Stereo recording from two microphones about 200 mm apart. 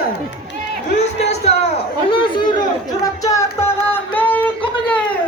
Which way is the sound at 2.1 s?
25° left (ahead or behind).